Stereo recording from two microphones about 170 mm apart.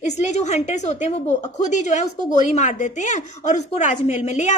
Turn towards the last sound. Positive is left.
turn(degrees=45)  # may be behind; listen again after turning